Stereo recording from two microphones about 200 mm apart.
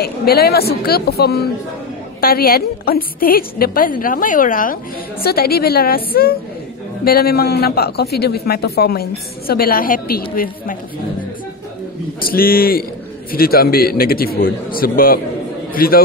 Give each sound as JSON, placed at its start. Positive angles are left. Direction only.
{"t": 0.0, "sound": "a man's voice", "side_deg": 50}
{"t": 12.2, "sound": "a man's voice", "side_deg": 45}